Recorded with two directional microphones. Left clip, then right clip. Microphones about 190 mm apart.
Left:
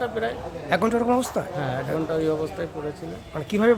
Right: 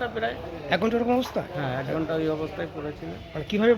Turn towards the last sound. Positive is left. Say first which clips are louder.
# left 2 dB
turn(degrees=5)  # may be behind; listen again after turning